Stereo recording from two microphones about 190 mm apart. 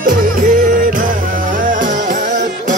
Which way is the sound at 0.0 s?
45° right (ahead or behind).